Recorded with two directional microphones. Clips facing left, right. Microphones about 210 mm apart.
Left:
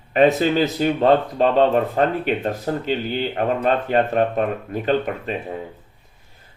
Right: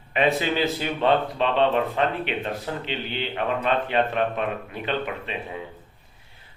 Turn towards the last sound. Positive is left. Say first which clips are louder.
# left 7 dB
turn(degrees=45)  # may be behind; listen again after turning